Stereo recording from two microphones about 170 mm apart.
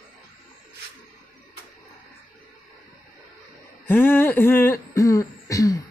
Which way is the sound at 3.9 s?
10° left (ahead or behind).